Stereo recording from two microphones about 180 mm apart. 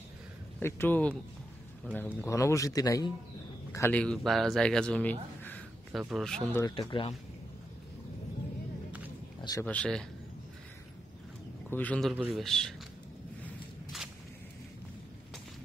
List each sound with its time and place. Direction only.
0.6 s speech: 15° left (ahead or behind)
6.7 s speech: 30° left (ahead or behind)
9.4 s speech: 20° left (ahead or behind)
9.7 s speech: 5° left (ahead or behind)
11.7 s speech: 10° left (ahead or behind)
13.9 s a sound: 5° right (ahead or behind)